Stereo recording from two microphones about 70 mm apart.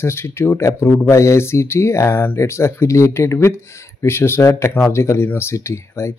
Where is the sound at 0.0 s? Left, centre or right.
Left.